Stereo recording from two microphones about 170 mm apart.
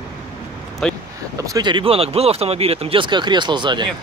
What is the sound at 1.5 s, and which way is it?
Speech, 25° right (ahead or behind).